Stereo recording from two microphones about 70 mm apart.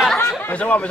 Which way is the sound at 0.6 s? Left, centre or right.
Centre.